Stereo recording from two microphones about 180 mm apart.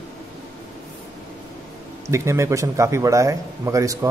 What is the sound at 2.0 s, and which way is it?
Speech, 15° right (ahead or behind).